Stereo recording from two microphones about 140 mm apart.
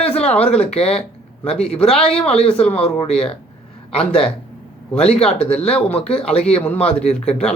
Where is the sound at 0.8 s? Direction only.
50° left (ahead or behind).